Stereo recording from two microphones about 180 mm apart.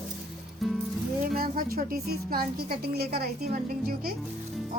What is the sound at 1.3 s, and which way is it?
A woman's voice, 55° right (ahead or behind).